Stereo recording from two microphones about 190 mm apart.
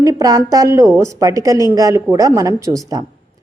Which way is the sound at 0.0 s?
20° right (ahead or behind).